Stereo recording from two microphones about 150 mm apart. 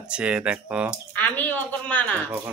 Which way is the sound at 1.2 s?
10° left (ahead or behind).